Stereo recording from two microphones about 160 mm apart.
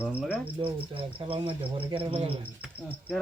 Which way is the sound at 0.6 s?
35° right (ahead or behind).